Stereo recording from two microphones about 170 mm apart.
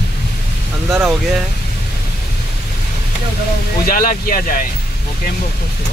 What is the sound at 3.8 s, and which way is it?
Speech, 60° left (ahead or behind).